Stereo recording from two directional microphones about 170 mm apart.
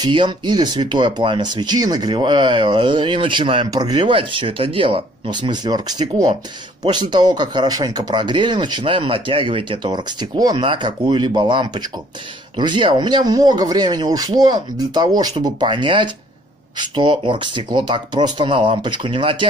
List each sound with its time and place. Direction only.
0.0 s speech: 25° right (ahead or behind)